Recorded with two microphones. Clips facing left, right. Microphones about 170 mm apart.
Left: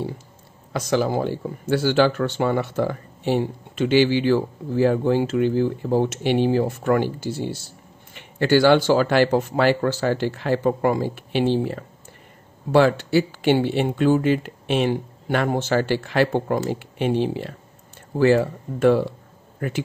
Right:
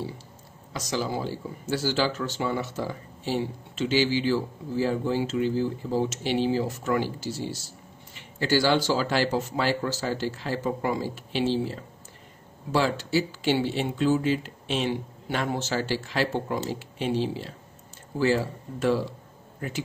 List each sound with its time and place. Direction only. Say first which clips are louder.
0.7 s speech: left 8 dB; 60° left (ahead or behind)